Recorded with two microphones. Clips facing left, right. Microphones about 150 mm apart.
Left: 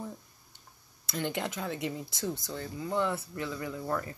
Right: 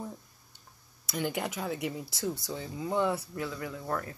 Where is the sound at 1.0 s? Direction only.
5° right (ahead or behind).